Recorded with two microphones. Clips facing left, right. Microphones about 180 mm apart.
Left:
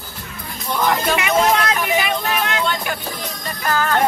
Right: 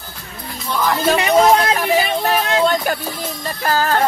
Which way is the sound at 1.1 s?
35° right (ahead or behind).